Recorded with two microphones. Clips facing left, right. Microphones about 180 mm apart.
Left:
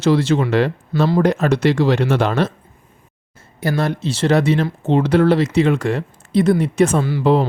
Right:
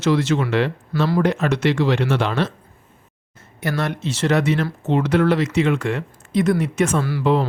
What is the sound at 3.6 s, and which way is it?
Speech, 30° left (ahead or behind).